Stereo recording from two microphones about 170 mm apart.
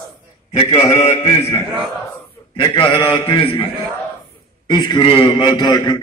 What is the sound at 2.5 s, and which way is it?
A man's voice, 30° left (ahead or behind).